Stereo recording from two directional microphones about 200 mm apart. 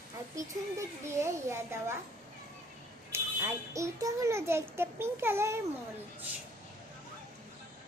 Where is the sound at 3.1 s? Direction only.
15° right (ahead or behind).